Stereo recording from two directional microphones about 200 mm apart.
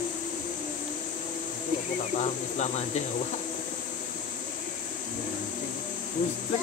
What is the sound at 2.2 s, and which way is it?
Speech, 35° left (ahead or behind).